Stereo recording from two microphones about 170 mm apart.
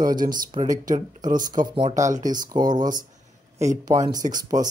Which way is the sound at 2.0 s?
45° right (ahead or behind).